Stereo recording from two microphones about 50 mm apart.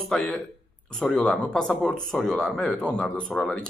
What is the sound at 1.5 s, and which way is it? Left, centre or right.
Speech, centre.